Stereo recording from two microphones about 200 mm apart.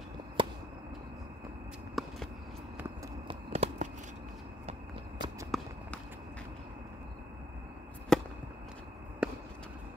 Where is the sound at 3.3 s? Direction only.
30° right (ahead or behind).